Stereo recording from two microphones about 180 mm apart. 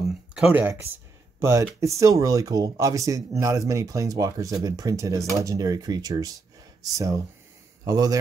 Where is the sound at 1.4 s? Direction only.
15° right (ahead or behind).